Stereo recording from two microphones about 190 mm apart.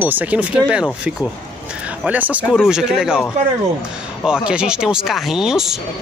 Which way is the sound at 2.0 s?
10° right (ahead or behind).